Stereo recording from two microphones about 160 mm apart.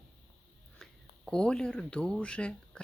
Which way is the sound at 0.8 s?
5° left (ahead or behind).